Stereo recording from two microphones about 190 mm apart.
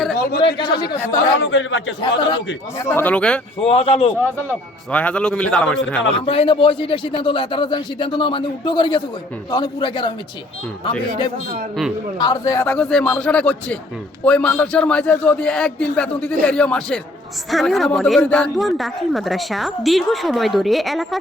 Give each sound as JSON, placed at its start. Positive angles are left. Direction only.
{"t": 0.3, "sound": "a man's voice", "side_deg": 25}
{"t": 1.4, "sound": "a man's voice", "side_deg": 75}
{"t": 2.0, "sound": "a man's voice", "side_deg": 25}
{"t": 2.7, "sound": "a man's voice", "side_deg": 10}
{"t": 3.6, "sound": "a man's voice", "side_deg": 30}
{"t": 4.9, "sound": "speech", "side_deg": 5}
{"t": 6.2, "sound": "a man's voice", "side_deg": 30}
{"t": 12.2, "sound": "a man's voice", "side_deg": 20}